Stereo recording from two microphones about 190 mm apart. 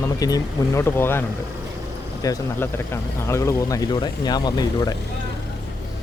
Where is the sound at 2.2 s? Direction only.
15° left (ahead or behind).